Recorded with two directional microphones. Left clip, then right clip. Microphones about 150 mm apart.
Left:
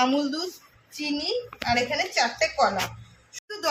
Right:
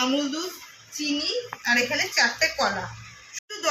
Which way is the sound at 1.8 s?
Centre (ahead or behind).